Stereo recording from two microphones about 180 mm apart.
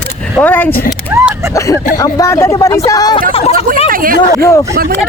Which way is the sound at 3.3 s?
35° left (ahead or behind).